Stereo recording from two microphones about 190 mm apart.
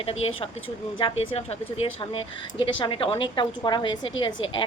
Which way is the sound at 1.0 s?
30° left (ahead or behind).